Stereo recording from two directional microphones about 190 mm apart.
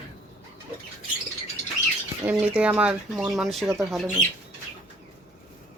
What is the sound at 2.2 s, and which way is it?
Speech, 5° right (ahead or behind).